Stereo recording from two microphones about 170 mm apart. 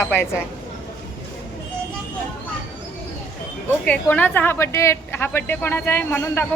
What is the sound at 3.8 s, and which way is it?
A woman's voice, 10° left (ahead or behind).